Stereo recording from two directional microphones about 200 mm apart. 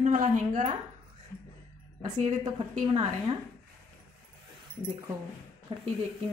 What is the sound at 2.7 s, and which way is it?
Speech, 30° right (ahead or behind).